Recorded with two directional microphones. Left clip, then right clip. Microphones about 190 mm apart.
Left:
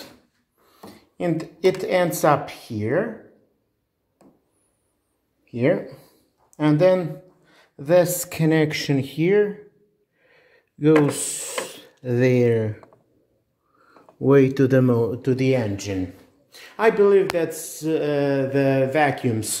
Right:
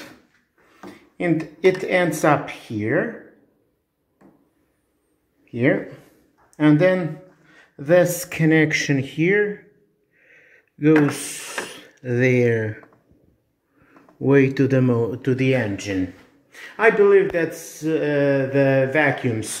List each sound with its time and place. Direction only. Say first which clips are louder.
1.1 s speech: right 3 dB; 5° left (ahead or behind)
5.5 s speech: right 1 dB; 10° left (ahead or behind)
10.2 s a sound: right 5 dB; 20° left (ahead or behind)
11.1 s speech: even; 15° left (ahead or behind)
14.2 s speech: left 1 dB; 10° left (ahead or behind)